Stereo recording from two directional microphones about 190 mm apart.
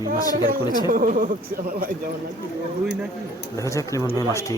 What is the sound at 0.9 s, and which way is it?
A man's voice, 45° right (ahead or behind).